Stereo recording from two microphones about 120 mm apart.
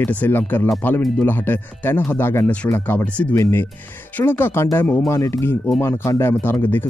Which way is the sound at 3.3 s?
25° left (ahead or behind).